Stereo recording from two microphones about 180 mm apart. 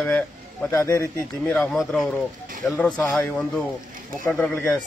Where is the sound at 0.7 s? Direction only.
15° left (ahead or behind).